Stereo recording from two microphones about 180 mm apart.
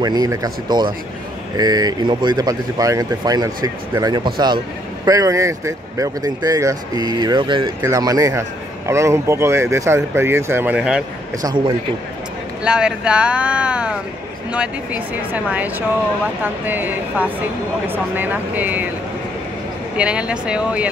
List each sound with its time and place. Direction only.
0.0 s a man's voice: 20° right (ahead or behind); by 11.1 s 5° right (ahead or behind)
11.4 s speech: 25° right (ahead or behind)
12.6 s a man's voice: 5° right (ahead or behind)
20.0 s speech: 5° right (ahead or behind)